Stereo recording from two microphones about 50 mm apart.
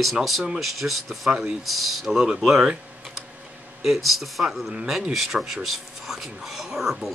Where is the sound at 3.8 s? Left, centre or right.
Centre.